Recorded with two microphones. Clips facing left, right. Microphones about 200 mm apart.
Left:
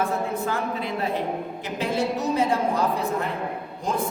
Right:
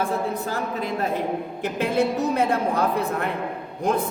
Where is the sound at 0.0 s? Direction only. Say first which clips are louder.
Even; 40° right (ahead or behind).